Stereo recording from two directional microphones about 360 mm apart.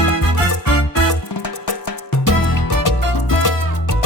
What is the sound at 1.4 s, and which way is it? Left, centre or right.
Music, left.